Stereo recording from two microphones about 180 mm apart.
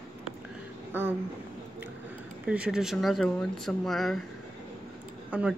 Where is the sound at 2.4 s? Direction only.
5° right (ahead or behind).